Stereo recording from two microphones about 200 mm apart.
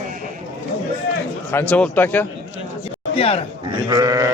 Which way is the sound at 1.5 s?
5° left (ahead or behind).